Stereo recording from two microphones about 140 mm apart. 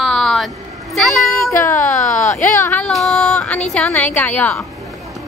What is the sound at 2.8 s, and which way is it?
A woman's voice, centre (ahead or behind).